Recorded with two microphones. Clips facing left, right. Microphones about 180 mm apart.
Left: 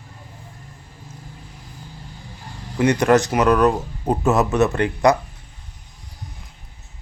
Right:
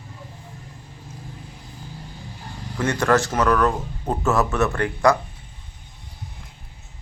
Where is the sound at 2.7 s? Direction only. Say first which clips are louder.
Left 4 dB; 15° left (ahead or behind).